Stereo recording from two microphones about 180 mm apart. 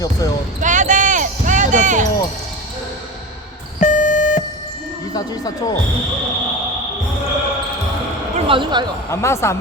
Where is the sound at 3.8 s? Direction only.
45° left (ahead or behind).